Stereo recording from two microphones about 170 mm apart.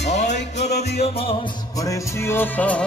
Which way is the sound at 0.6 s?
40° left (ahead or behind).